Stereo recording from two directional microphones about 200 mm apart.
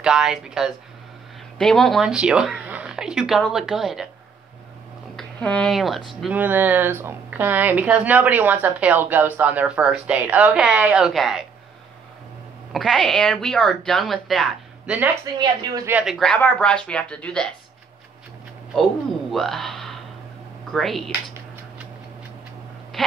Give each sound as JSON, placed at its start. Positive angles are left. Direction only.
{"t": 0.0, "sound": "speech", "side_deg": -5}
{"t": 5.1, "sound": "speech", "side_deg": 5}
{"t": 12.7, "sound": "speech", "side_deg": 0}
{"t": 15.3, "sound": "speech", "side_deg": -20}
{"t": 15.9, "sound": "speech", "side_deg": -5}
{"t": 19.3, "sound": "a sound", "side_deg": 0}
{"t": 20.7, "sound": "speech", "side_deg": 0}
{"t": 23.0, "sound": "a sound", "side_deg": 0}